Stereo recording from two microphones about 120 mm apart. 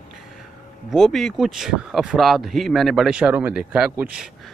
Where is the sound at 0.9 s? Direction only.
Centre (ahead or behind).